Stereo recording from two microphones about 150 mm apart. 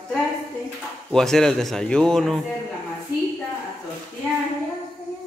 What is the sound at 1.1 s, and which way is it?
A man's voice, 5° left (ahead or behind).